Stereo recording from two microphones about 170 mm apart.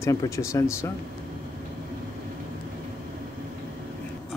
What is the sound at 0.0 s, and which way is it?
Speech, 15° left (ahead or behind).